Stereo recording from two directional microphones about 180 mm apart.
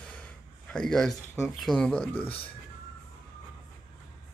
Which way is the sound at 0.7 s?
5° left (ahead or behind).